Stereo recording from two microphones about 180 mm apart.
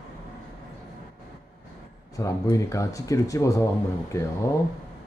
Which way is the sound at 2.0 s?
20° left (ahead or behind).